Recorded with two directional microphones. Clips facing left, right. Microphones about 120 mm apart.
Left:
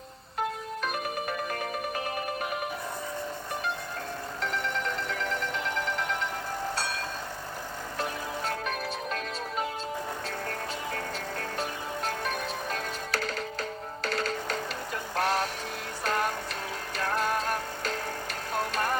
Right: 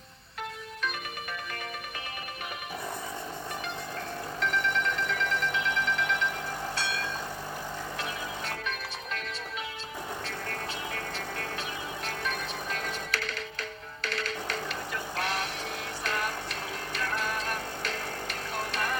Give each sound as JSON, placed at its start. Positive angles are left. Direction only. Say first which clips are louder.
{"t": 0.3, "sound": "music", "louder": "left 6 dB", "side_deg": 40}
{"t": 4.4, "sound": "alarm clock", "louder": "right 3 dB", "side_deg": 40}
{"t": 6.7, "sound": "vehicle", "louder": "even", "side_deg": 40}
{"t": 12.0, "sound": "music", "louder": "left 3 dB", "side_deg": 40}
{"t": 15.1, "sound": "vehicle", "louder": "left 6 dB", "side_deg": 40}
{"t": 16.0, "sound": "music", "louder": "left 4 dB", "side_deg": 40}
{"t": 18.5, "sound": "vehicle", "louder": "left 4 dB", "side_deg": 40}